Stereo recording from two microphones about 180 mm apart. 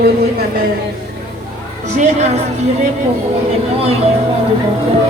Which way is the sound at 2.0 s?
40° right (ahead or behind).